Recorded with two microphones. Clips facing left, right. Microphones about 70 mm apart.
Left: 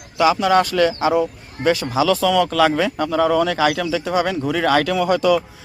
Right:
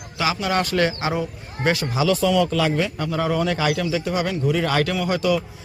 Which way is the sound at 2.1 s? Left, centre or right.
Left.